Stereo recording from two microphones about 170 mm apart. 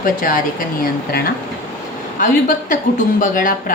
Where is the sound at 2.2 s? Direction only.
50° left (ahead or behind).